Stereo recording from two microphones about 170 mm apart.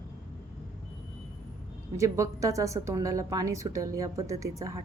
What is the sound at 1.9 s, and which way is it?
A woman's voice, 20° right (ahead or behind).